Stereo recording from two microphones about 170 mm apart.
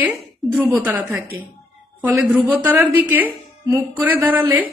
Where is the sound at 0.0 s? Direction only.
5° right (ahead or behind).